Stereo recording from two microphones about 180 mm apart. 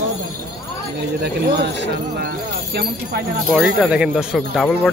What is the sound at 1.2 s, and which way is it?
Speech, 65° right (ahead or behind).